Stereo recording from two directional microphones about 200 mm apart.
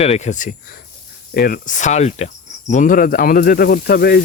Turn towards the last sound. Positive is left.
turn(degrees=50)  # may be behind; listen again after turning